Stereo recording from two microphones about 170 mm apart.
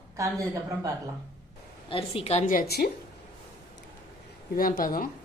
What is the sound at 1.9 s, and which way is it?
Speech, 35° left (ahead or behind).